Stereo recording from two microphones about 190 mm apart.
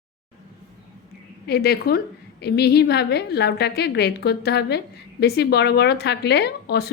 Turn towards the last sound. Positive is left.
turn(degrees=60)  # may be behind; listen again after turning